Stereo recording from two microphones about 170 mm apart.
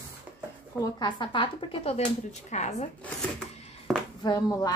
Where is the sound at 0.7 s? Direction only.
25° left (ahead or behind); by 2.9 s 40° left (ahead or behind).